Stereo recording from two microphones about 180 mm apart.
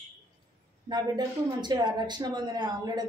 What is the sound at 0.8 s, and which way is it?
Speech, 25° right (ahead or behind).